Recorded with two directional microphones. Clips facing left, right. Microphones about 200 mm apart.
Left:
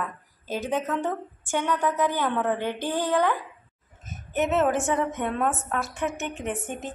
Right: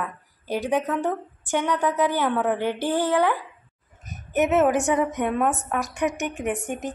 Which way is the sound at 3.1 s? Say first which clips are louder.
Right 2 dB; 10° right (ahead or behind).